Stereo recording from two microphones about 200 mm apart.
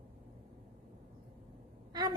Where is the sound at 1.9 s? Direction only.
20° right (ahead or behind).